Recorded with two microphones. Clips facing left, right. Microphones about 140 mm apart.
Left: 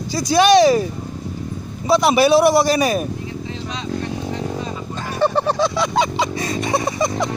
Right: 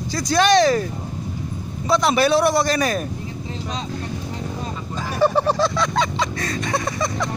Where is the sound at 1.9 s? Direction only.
10° left (ahead or behind).